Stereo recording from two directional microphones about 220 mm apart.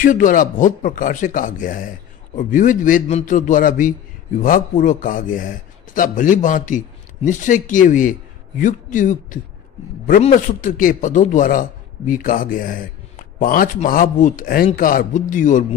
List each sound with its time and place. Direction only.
0.0 s a man's voice: 35° left (ahead or behind)